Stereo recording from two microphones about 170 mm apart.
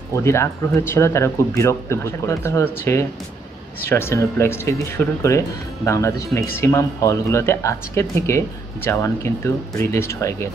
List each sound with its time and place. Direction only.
0.1 s speech: 15° left (ahead or behind)